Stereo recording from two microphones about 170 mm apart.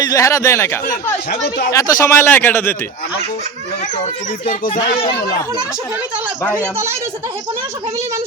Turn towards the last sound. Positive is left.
turn(degrees=-15)  # may be behind; listen again after turning